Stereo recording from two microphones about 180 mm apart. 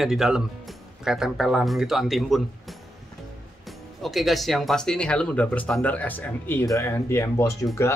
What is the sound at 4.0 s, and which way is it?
Speech, centre (ahead or behind).